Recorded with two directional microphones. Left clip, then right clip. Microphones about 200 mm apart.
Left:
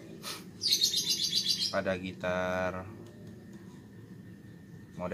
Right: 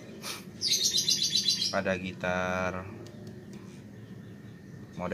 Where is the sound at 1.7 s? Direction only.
Centre (ahead or behind).